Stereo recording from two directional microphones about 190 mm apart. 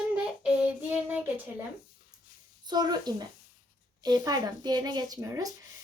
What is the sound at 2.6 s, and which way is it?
A child's voice, 20° right (ahead or behind).